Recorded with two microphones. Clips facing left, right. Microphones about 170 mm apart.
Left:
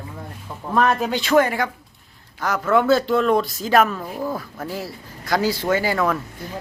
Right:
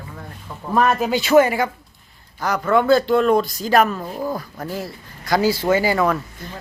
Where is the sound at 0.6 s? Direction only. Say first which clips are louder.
Right 1 dB; 5° right (ahead or behind).